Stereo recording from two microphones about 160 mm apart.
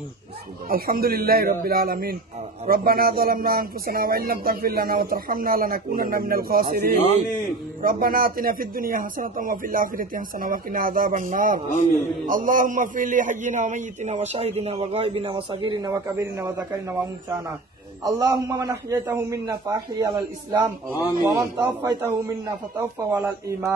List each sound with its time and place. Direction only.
0.7 s a man's voice: 65° right (ahead or behind)
11.7 s a man's voice: 50° left (ahead or behind)
12.3 s a man's voice: 60° right (ahead or behind); by 16.6 s 20° right (ahead or behind)
18.0 s a man's voice: 20° right (ahead or behind)
21.3 s a man's voice: 20° right (ahead or behind)